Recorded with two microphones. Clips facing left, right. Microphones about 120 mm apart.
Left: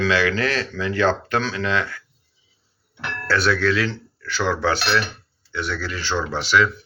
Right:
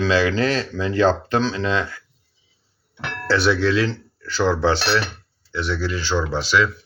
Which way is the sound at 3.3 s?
25° right (ahead or behind).